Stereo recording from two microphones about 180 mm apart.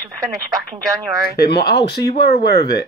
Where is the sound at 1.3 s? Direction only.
65° left (ahead or behind).